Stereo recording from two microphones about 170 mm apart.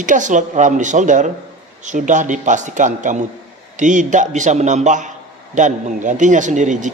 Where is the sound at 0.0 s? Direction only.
50° right (ahead or behind).